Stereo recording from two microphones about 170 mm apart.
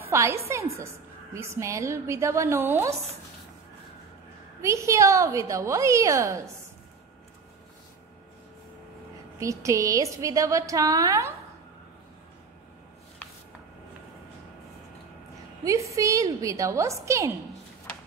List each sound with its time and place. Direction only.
0.0 s a sound: 15° right (ahead or behind)
1.3 s a woman's voice: 15° right (ahead or behind)
4.6 s a woman's voice: 15° right (ahead or behind)
9.4 s a woman's voice: 20° right (ahead or behind)
15.6 s a woman's voice: 20° right (ahead or behind)